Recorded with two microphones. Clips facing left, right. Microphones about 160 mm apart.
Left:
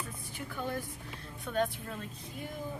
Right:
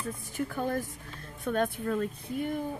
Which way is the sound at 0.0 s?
45° right (ahead or behind).